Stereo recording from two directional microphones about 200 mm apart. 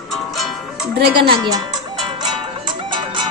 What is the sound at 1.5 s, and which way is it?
Music, 20° right (ahead or behind).